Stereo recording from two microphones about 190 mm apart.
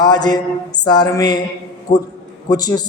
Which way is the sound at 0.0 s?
20° left (ahead or behind).